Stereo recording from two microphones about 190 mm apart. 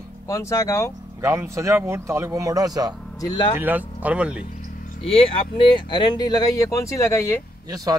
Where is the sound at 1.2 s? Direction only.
15° right (ahead or behind).